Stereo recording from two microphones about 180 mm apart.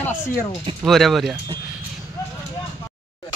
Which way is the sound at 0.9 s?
Centre (ahead or behind).